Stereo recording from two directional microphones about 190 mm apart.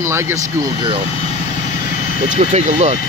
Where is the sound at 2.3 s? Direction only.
35° right (ahead or behind).